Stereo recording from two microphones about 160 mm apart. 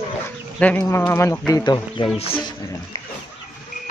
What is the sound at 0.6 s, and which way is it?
Speech, 10° left (ahead or behind).